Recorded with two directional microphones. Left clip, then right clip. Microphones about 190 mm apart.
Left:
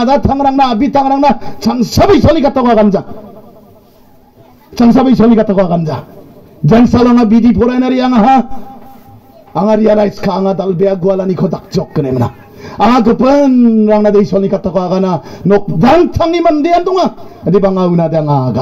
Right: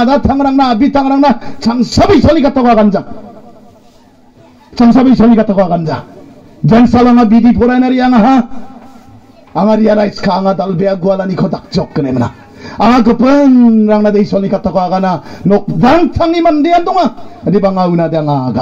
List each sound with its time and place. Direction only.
0.0 s a man's voice: 30° left (ahead or behind)
4.7 s a man's voice: 30° left (ahead or behind)
5.2 s speech: 15° left (ahead or behind)
5.5 s a man's voice: 30° left (ahead or behind)
9.5 s a man's voice: 30° left (ahead or behind)